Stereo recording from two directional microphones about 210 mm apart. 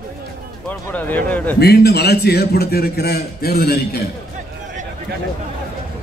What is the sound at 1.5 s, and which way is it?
A man's voice, 50° left (ahead or behind).